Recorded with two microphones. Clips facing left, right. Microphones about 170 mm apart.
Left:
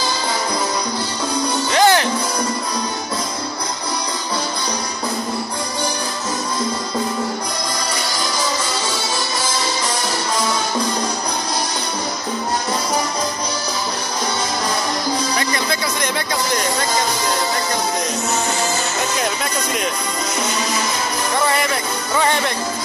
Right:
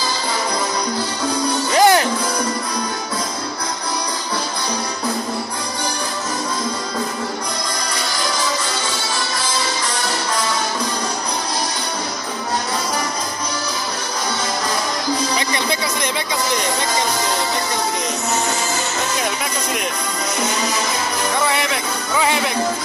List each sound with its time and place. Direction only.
1.7 s music: 35° right (ahead or behind)
22.2 s music: 5° right (ahead or behind)